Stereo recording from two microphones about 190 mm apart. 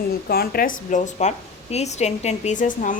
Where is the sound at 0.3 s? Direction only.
50° left (ahead or behind).